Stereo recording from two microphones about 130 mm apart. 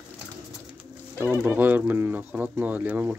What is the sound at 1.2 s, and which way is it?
Speech, 15° right (ahead or behind).